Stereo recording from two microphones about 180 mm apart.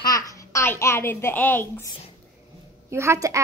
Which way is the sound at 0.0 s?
20° left (ahead or behind).